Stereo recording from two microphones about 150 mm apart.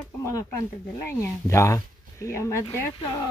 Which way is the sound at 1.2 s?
20° left (ahead or behind).